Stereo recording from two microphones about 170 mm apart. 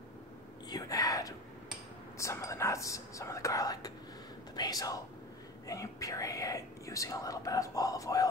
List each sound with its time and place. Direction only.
0.7 s whispering: 20° left (ahead or behind)
2.1 s speech: 15° left (ahead or behind)